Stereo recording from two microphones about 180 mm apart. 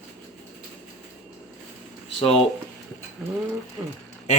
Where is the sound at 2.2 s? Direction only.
30° left (ahead or behind).